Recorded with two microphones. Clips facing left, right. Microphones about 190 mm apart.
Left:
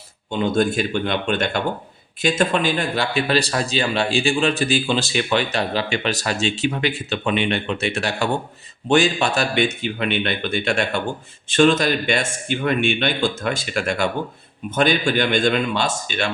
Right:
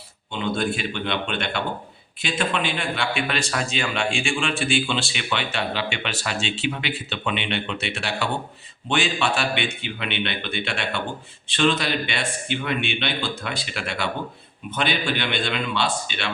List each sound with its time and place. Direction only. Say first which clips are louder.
0.3 s a man's voice: left 6 dB; 45° left (ahead or behind)